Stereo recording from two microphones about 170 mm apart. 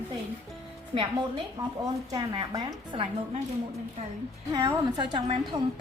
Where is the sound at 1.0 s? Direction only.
30° right (ahead or behind).